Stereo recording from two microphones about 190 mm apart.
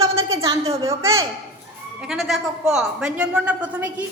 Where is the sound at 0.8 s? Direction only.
15° right (ahead or behind).